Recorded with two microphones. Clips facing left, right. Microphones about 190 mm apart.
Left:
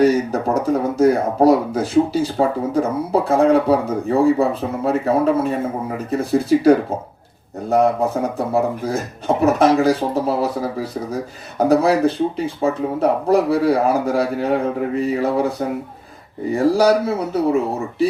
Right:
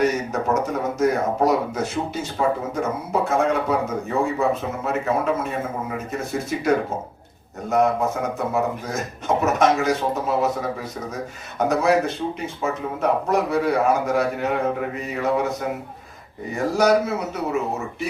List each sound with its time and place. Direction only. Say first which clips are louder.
0.0 s speech: left 6 dB; 35° left (ahead or behind)